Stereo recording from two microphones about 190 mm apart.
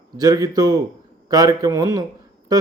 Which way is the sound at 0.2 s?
20° right (ahead or behind).